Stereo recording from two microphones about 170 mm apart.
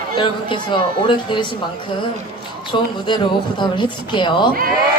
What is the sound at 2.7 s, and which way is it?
A woman's voice, 30° left (ahead or behind).